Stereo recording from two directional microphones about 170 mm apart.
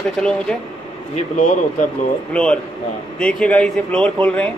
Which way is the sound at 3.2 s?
5° left (ahead or behind).